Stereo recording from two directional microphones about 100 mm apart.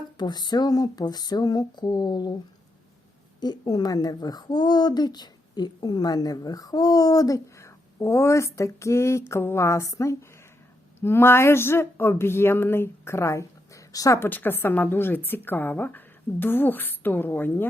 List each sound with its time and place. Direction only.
0.2 s speech: 45° left (ahead or behind)
3.4 s speech: 45° left (ahead or behind)
14.2 s speech: 20° left (ahead or behind)